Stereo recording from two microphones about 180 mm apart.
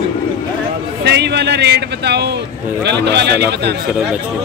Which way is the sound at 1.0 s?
70° right (ahead or behind).